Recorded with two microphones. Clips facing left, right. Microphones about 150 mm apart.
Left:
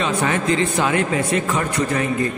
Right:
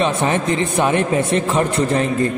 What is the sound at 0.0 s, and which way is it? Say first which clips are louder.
A man's voice: right 3 dB; 25° right (ahead or behind).